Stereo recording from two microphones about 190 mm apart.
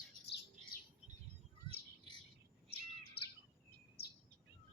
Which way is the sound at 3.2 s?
55° left (ahead or behind).